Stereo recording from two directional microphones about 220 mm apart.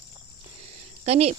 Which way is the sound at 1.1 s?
30° right (ahead or behind).